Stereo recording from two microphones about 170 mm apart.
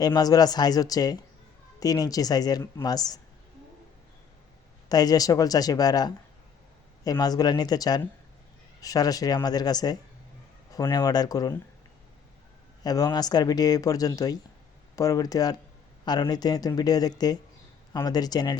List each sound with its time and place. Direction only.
0.0 s speech: 20° left (ahead or behind)
4.9 s speech: 20° left (ahead or behind)
12.8 s speech: 20° left (ahead or behind)